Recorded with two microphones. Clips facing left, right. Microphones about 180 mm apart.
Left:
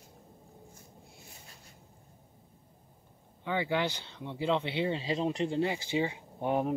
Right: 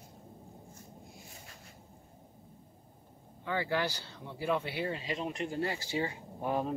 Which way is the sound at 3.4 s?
20° left (ahead or behind).